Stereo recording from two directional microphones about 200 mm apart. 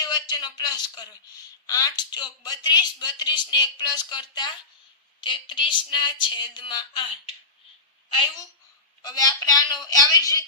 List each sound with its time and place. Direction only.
0.0 s a man's voice: 20° left (ahead or behind)
9.0 s a woman's voice: 20° left (ahead or behind)